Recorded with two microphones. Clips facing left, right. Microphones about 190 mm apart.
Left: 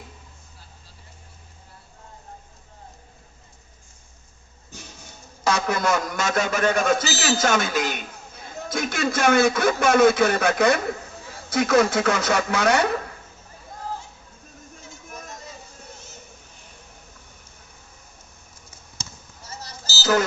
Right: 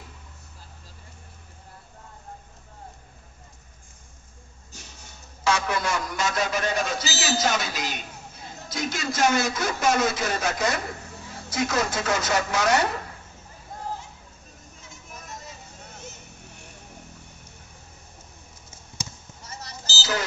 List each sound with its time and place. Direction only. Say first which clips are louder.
5.4 s a man's voice: left 2 dB; 40° left (ahead or behind); by 12.9 s 60° left (ahead or behind)
19.5 s vehicle: left 1 dB; 30° left (ahead or behind)
20.0 s a sound: left 8 dB; 50° left (ahead or behind)